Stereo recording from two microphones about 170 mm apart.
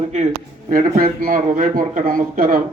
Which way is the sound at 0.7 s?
55° right (ahead or behind).